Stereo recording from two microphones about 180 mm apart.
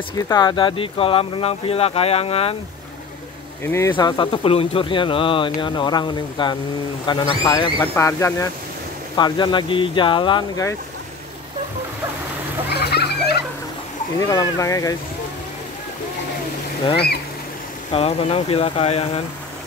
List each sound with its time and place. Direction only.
0.3 s speech: 25° left (ahead or behind)
3.6 s speech: 15° left (ahead or behind)
3.9 s speech: 25° left (ahead or behind)
12.6 s a sound: 65° left (ahead or behind)
14.2 s speech: 20° left (ahead or behind)
16.9 s speech: 60° left (ahead or behind)
17.9 s speech: 35° left (ahead or behind)